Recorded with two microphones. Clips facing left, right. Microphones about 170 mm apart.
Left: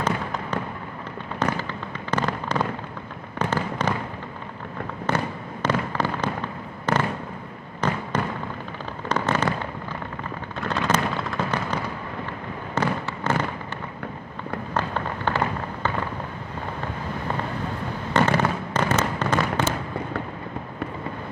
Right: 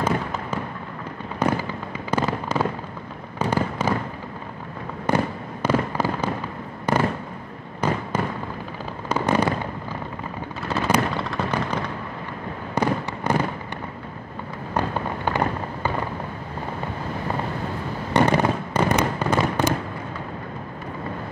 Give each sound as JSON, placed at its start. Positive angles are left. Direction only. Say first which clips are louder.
{"t": 1.4, "sound": "fireworks", "louder": "right 3 dB", "side_deg": -10}
{"t": 5.6, "sound": "fireworks", "louder": "right 2 dB", "side_deg": -10}
{"t": 9.1, "sound": "fireworks", "louder": "right 3 dB", "side_deg": -10}
{"t": 10.7, "sound": "gunshot", "louder": "right 2 dB", "side_deg": 0}
{"t": 12.7, "sound": "fireworks", "louder": "right 2 dB", "side_deg": -15}
{"t": 14.7, "sound": "fireworks", "louder": "right 3 dB", "side_deg": -10}
{"t": 18.1, "sound": "fireworks", "louder": "right 2 dB", "side_deg": -15}